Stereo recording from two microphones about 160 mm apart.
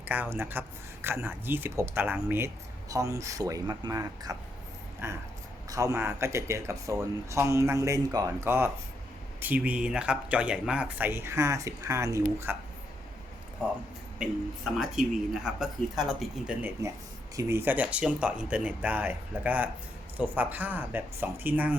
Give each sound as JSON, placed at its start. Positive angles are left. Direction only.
{"t": 0.0, "sound": "speech", "side_deg": -10}
{"t": 14.2, "sound": "speech", "side_deg": -5}